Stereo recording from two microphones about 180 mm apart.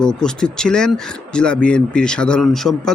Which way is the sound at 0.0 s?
5° left (ahead or behind).